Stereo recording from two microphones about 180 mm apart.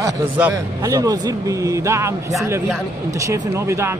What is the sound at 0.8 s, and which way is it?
Speech, 20° right (ahead or behind).